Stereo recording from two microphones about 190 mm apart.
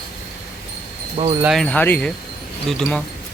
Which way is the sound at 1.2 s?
25° right (ahead or behind).